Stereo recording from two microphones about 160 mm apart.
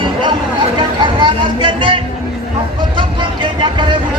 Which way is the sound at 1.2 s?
30° right (ahead or behind).